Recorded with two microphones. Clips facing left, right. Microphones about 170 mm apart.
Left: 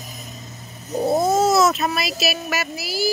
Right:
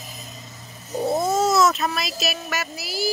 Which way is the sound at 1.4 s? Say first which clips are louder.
Left 2 dB; 5° left (ahead or behind).